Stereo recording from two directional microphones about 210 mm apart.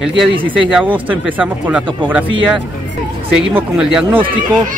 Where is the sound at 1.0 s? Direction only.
5° right (ahead or behind).